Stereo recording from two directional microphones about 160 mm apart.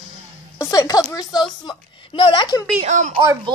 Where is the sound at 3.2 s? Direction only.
30° right (ahead or behind).